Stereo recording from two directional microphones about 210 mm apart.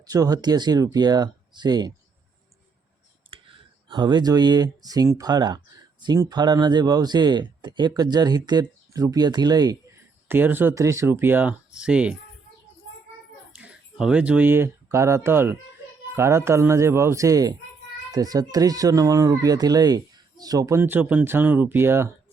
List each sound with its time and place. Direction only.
0.0 s speech: 15° right (ahead or behind)
3.3 s clicking: 25° right (ahead or behind)
3.8 s speech: 20° right (ahead or behind); by 12.1 s 5° right (ahead or behind)
13.5 s speech: 5° right (ahead or behind)